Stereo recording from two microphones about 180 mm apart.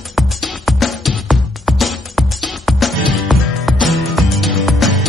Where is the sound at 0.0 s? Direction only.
Centre (ahead or behind).